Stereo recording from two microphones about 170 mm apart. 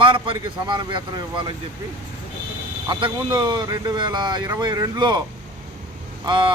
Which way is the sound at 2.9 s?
30° right (ahead or behind).